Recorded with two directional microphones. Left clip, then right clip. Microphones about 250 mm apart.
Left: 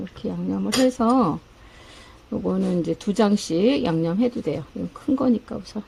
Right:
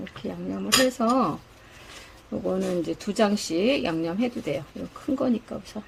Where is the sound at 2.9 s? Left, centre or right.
Centre.